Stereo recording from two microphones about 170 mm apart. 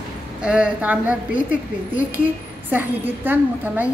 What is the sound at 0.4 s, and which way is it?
A woman's voice, 5° right (ahead or behind).